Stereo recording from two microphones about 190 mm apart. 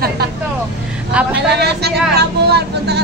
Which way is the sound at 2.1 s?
60° right (ahead or behind).